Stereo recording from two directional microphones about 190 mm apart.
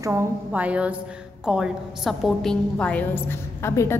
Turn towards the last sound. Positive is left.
turn(degrees=15)  # may be behind; listen again after turning